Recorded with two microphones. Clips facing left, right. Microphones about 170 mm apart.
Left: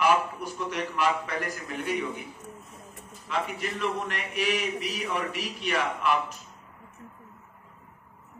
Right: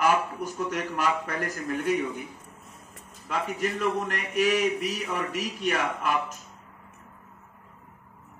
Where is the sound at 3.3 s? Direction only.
45° right (ahead or behind).